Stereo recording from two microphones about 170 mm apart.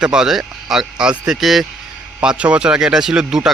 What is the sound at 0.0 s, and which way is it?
Speech, 5° right (ahead or behind).